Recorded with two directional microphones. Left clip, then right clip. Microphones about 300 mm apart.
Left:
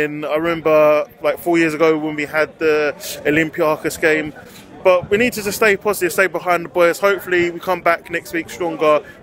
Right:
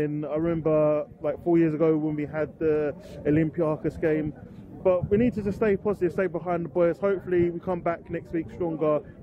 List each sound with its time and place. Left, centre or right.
0.0 s speech: centre